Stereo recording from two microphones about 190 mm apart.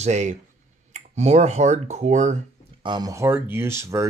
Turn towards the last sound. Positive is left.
turn(degrees=-15)  # may be behind; listen again after turning